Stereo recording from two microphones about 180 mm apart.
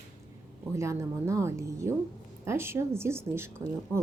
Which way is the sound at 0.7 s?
15° right (ahead or behind).